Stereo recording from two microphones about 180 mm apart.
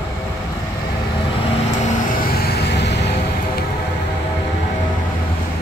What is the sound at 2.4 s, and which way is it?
Vehicle, 70° left (ahead or behind).